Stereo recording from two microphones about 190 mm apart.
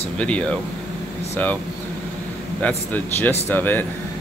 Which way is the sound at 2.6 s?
10° left (ahead or behind).